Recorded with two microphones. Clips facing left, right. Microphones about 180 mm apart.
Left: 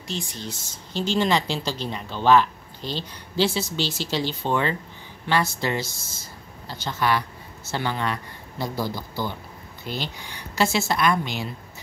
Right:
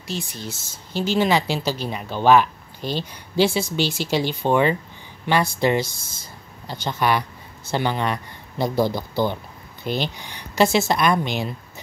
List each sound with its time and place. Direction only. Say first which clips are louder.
0.0 s speech: right 2 dB; 5° right (ahead or behind)